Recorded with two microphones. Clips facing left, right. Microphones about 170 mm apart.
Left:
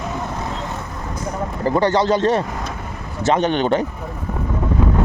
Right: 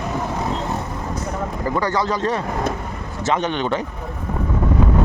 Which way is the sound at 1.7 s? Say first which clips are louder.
Left 6 dB; 30° left (ahead or behind).